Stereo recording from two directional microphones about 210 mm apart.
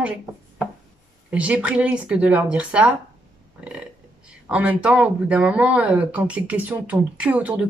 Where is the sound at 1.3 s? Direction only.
5° right (ahead or behind).